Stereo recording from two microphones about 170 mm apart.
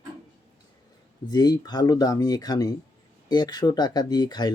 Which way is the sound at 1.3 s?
25° left (ahead or behind).